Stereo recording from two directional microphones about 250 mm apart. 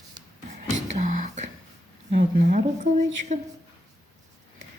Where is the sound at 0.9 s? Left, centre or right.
Right.